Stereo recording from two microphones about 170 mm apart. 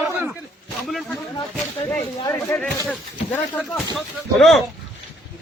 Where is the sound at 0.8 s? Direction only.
Centre (ahead or behind).